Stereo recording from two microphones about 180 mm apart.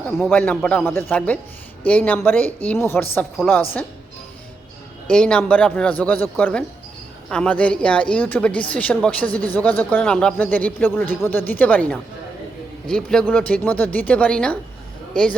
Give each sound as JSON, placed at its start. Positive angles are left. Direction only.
{"t": 0.3, "sound": "speech", "side_deg": 10}
{"t": 5.0, "sound": "a man's voice", "side_deg": 5}